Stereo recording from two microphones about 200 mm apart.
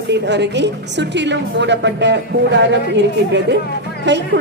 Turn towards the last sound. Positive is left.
turn(degrees=-60)  # may be behind; listen again after turning